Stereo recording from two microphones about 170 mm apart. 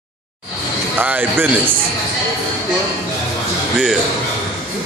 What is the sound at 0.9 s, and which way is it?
Speech, 10° right (ahead or behind).